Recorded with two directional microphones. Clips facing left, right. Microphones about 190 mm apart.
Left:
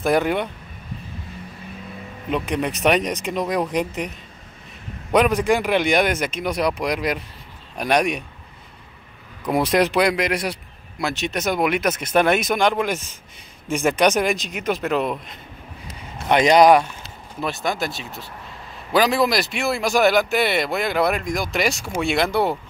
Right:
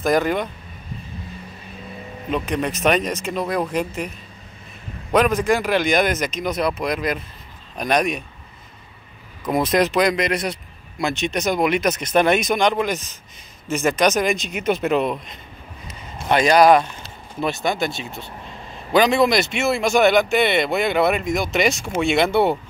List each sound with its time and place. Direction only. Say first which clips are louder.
0.0 s a man's voice: even; 10° left (ahead or behind)
2.3 s a man's voice: even; 15° left (ahead or behind)
5.1 s a man's voice: even; 15° left (ahead or behind)
9.4 s a man's voice: even; 15° left (ahead or behind)
14.5 s speech: right 3 dB; 5° right (ahead or behind)
16.3 s a man's voice: even; 20° left (ahead or behind)
17.4 s speech: right 2 dB; centre (ahead or behind)